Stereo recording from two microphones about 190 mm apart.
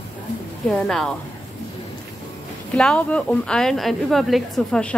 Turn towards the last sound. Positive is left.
turn(degrees=5)  # may be behind; listen again after turning